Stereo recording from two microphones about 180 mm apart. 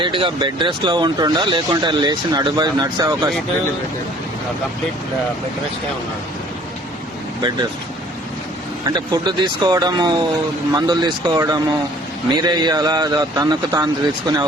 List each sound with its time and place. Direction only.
0.0 s speech: 25° right (ahead or behind)
8.9 s speech: 25° right (ahead or behind)